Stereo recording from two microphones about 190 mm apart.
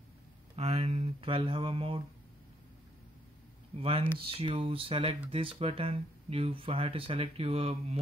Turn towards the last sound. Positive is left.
turn(degrees=-30)  # may be behind; listen again after turning